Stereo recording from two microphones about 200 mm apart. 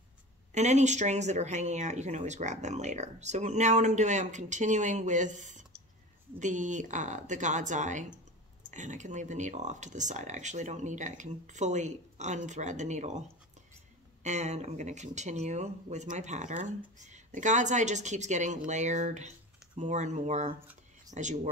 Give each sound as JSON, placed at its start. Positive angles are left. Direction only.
{"t": 0.5, "sound": "speech", "side_deg": -35}
{"t": 14.2, "sound": "speech", "side_deg": -35}